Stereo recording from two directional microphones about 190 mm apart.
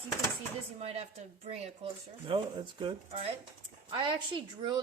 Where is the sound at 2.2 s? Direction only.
25° right (ahead or behind).